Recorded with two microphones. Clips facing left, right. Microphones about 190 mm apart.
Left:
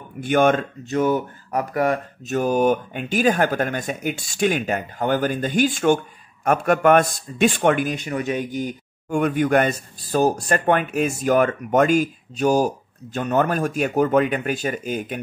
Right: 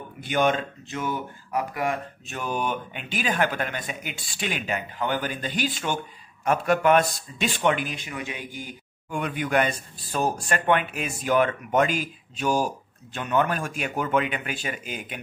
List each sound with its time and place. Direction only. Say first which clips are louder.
0.2 s speech: left 6 dB; 50° left (ahead or behind)